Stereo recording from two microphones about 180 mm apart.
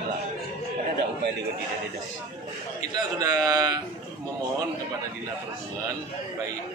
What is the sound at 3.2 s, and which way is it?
Speech, 20° right (ahead or behind).